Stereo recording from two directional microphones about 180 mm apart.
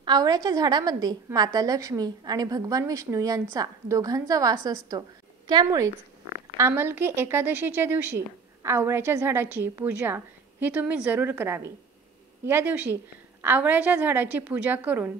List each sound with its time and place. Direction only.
0.0 s a woman's voice: 25° right (ahead or behind)